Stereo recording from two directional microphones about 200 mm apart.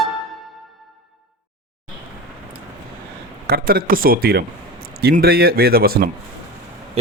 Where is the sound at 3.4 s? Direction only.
50° right (ahead or behind).